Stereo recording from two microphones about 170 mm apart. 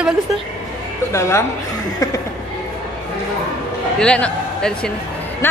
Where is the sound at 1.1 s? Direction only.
15° left (ahead or behind).